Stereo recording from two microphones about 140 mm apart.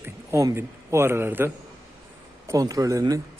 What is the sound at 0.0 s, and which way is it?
A man's voice, 20° right (ahead or behind).